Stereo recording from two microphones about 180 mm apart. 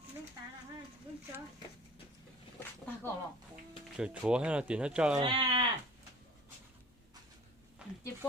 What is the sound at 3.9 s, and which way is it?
Speech, 5° right (ahead or behind).